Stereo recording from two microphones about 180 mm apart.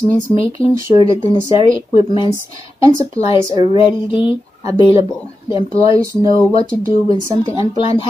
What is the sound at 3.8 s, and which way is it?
Speech, 30° left (ahead or behind).